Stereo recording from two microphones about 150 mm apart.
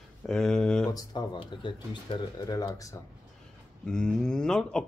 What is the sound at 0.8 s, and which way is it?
Speech, 25° left (ahead or behind).